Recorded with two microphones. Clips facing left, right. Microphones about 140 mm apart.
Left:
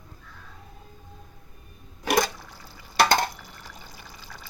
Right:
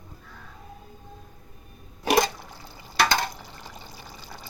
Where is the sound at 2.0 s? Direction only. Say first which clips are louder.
Right 2 dB; 20° right (ahead or behind).